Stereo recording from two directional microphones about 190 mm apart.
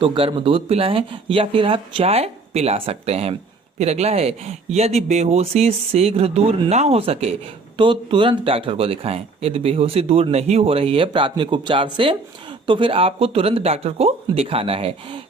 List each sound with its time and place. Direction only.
0.0 s speech: 25° right (ahead or behind)